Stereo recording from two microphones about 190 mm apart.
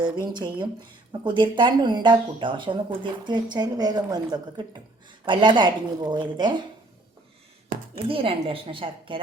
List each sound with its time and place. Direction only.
0.3 s speech: 25° right (ahead or behind)
8.0 s speech: 30° right (ahead or behind)